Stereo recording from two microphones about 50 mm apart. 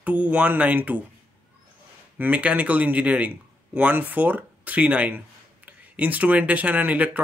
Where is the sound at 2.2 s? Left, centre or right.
Right.